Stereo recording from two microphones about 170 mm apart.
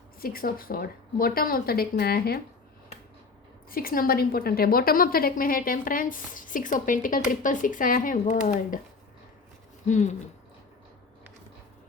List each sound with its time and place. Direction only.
0.2 s a woman's voice: 60° left (ahead or behind)
3.7 s a woman's voice: 60° left (ahead or behind)
9.8 s speech: 45° left (ahead or behind)